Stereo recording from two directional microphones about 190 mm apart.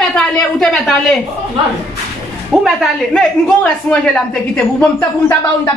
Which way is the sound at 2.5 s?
Centre (ahead or behind).